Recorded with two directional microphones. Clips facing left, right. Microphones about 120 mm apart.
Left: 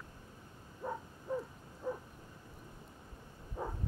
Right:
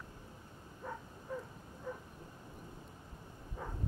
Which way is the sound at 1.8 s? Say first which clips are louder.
Left 5 dB; 15° left (ahead or behind).